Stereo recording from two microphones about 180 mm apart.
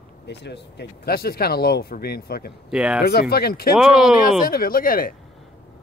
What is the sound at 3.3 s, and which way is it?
Speech, 60° left (ahead or behind).